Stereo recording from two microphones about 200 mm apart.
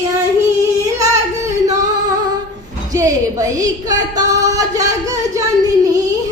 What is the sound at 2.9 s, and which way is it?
Speech, 15° right (ahead or behind).